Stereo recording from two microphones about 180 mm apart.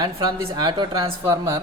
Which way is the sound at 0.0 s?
25° right (ahead or behind).